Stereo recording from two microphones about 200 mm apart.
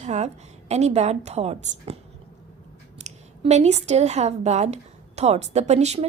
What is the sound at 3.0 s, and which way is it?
A woman's voice, 35° right (ahead or behind).